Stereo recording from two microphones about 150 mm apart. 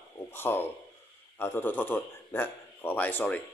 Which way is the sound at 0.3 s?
15° left (ahead or behind).